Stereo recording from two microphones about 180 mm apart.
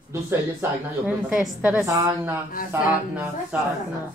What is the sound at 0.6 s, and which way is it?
Speech, 5° right (ahead or behind).